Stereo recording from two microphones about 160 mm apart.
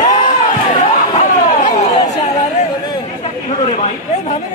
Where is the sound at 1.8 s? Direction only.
45° left (ahead or behind).